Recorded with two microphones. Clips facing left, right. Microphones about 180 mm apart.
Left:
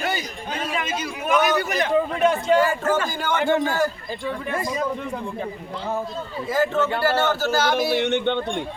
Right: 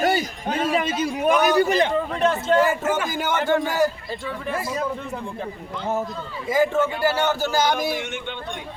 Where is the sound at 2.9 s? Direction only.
10° right (ahead or behind).